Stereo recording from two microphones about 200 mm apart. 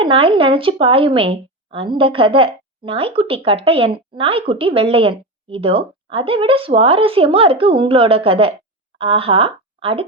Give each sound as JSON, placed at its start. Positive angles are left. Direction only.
{"t": 0.0, "sound": "a woman's voice", "side_deg": -25}